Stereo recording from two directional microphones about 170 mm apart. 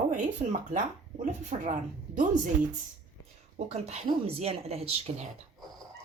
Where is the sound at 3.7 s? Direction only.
40° right (ahead or behind).